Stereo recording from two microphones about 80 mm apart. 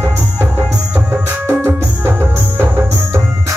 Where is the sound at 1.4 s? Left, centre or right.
Right.